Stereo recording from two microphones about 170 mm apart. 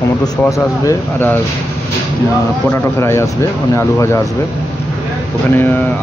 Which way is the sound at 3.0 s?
15° left (ahead or behind).